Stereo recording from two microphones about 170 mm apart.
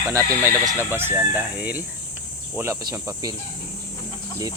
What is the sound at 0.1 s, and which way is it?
Speech, 20° right (ahead or behind).